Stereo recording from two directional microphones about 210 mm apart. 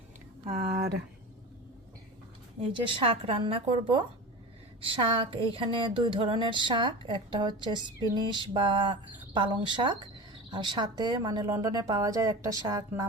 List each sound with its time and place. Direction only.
2.6 s speech: 25° right (ahead or behind)